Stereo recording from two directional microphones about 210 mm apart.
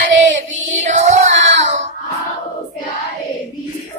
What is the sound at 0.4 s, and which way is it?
Child singing, 35° right (ahead or behind).